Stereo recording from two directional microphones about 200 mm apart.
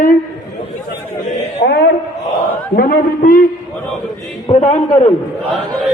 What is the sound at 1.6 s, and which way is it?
A man's voice, 60° left (ahead or behind).